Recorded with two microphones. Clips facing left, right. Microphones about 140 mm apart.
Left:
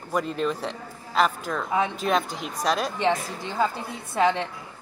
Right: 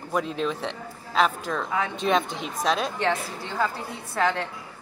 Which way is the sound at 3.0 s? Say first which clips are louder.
Left 2 dB; 15° left (ahead or behind).